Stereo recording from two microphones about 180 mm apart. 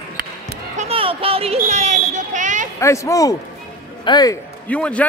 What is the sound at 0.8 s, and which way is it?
Basketball bounce, 30° right (ahead or behind).